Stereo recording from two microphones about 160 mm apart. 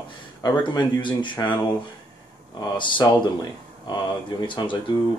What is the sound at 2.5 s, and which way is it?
Speech, 30° left (ahead or behind).